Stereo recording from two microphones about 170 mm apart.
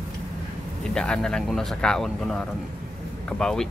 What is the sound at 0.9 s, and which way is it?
Speech, 5° left (ahead or behind).